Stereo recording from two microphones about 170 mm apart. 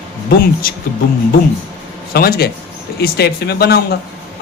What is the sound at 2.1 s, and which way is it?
A man's voice, 65° left (ahead or behind).